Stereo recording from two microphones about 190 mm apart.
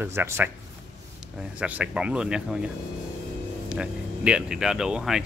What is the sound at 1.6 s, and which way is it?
Speech, 5° right (ahead or behind).